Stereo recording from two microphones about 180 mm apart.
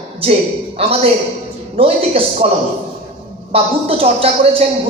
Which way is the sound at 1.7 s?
30° right (ahead or behind).